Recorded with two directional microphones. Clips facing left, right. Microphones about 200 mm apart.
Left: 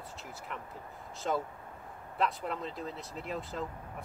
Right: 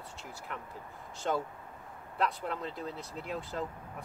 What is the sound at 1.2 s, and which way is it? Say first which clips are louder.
Speech: even; centre (ahead or behind).